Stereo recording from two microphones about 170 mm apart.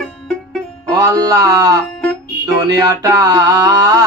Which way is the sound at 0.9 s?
20° right (ahead or behind).